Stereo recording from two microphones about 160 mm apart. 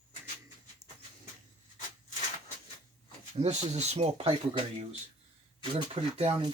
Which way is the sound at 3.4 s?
45° right (ahead or behind).